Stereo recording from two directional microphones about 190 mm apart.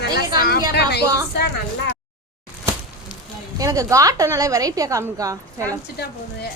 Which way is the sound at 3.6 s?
15° right (ahead or behind).